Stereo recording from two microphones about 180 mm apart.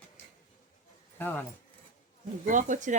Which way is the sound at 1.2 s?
10° left (ahead or behind).